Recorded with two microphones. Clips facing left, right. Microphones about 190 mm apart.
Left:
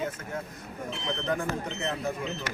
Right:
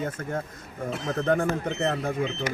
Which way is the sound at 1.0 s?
50° right (ahead or behind).